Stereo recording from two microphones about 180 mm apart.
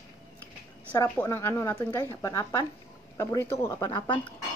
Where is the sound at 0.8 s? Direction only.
10° left (ahead or behind); by 4.3 s 25° left (ahead or behind).